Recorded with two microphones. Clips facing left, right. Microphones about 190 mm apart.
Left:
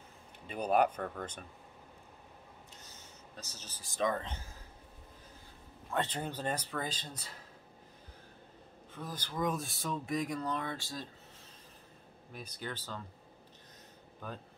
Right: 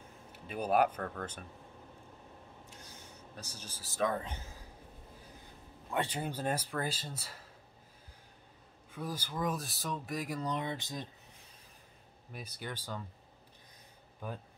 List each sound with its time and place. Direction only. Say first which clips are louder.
0.5 s speech: even; 5° right (ahead or behind)
0.9 s speech: left 1 dB; 5° left (ahead or behind)
2.7 s speech: right 2 dB; 10° right (ahead or behind)
5.9 s speech: even; 10° right (ahead or behind)
8.9 s speech: right 1 dB; 10° right (ahead or behind)
10.4 s speech: right 1 dB; 20° right (ahead or behind)
12.3 s speech: even; 10° right (ahead or behind)
14.2 s speech: right 2 dB; 10° right (ahead or behind)